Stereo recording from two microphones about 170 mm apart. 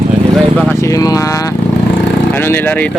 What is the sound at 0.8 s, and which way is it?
Speech, 20° left (ahead or behind).